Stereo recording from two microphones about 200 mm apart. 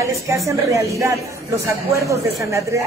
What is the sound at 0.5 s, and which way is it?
Speech, 15° right (ahead or behind).